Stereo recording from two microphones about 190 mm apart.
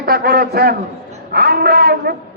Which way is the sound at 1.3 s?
55° right (ahead or behind).